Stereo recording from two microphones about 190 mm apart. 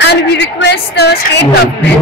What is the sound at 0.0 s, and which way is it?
A woman's voice, 65° left (ahead or behind).